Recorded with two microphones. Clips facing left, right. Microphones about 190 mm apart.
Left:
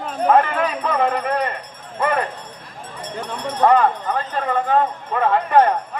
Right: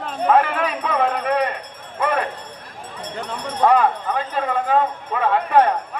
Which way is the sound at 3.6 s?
10° right (ahead or behind).